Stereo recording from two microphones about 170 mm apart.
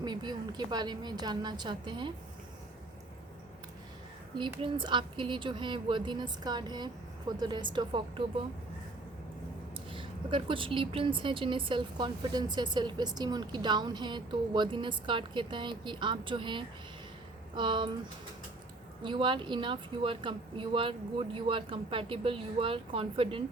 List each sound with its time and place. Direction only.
0.0 s a woman's voice: 25° right (ahead or behind)
4.4 s a woman's voice: 30° right (ahead or behind)
9.9 s a woman's voice: 30° right (ahead or behind)
19.0 s speech: 30° right (ahead or behind)